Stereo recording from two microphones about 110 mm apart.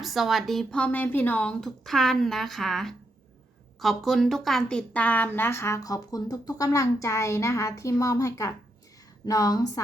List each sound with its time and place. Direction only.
0.0 s a woman's voice: centre (ahead or behind); by 9.8 s 35° left (ahead or behind)